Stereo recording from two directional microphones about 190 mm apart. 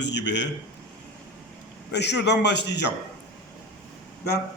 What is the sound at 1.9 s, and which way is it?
Speech, 65° left (ahead or behind).